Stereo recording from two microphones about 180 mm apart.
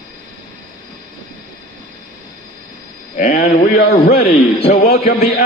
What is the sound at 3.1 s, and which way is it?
Speech, 55° left (ahead or behind).